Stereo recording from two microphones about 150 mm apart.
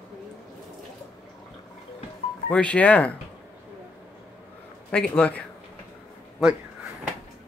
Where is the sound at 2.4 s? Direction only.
10° left (ahead or behind).